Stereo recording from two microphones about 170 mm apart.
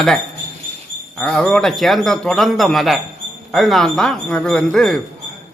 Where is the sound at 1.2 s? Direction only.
5° left (ahead or behind).